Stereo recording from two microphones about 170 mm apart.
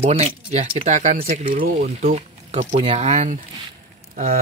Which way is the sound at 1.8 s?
40° right (ahead or behind).